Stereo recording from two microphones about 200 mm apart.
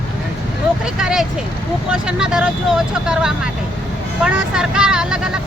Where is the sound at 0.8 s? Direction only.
5° right (ahead or behind).